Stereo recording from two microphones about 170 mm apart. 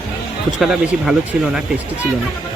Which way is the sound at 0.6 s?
5° right (ahead or behind).